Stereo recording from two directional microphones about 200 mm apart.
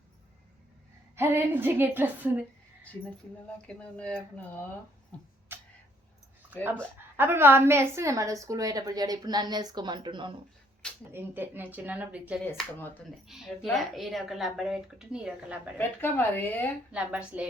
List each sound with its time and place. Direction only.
1.1 s a woman's voice: 10° right (ahead or behind)
3.4 s speech: 5° left (ahead or behind)
7.2 s a woman's voice: 10° right (ahead or behind)
11.1 s a woman's voice: 10° right (ahead or behind)
12.5 s speech: 10° left (ahead or behind)
13.2 s a woman's voice: centre (ahead or behind)
16.0 s speech: 10° left (ahead or behind)
16.9 s a woman's voice: 5° right (ahead or behind)